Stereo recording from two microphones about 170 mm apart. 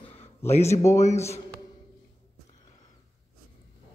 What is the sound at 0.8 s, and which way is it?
Speech, 15° left (ahead or behind).